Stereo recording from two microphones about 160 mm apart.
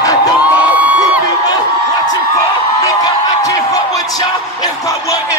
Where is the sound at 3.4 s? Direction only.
20° left (ahead or behind).